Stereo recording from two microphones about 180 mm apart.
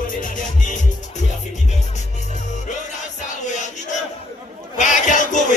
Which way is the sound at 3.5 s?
40° left (ahead or behind).